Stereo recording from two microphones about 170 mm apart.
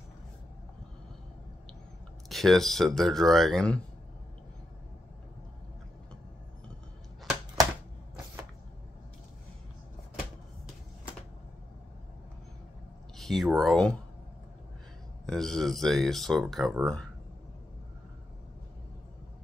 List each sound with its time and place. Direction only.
2.2 s speech: centre (ahead or behind)
13.2 s a sound: centre (ahead or behind)
13.6 s speech: 5° left (ahead or behind)
15.2 s speech: 5° left (ahead or behind)